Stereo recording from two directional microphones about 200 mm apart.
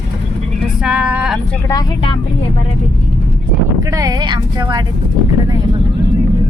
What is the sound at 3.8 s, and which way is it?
Speech, 15° right (ahead or behind).